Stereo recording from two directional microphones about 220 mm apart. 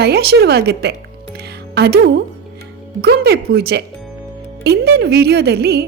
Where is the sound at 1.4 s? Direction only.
45° right (ahead or behind).